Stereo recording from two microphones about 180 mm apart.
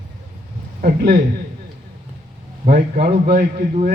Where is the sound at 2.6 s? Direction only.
50° right (ahead or behind).